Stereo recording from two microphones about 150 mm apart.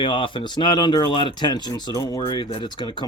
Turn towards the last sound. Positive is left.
turn(degrees=30)  # may be behind; listen again after turning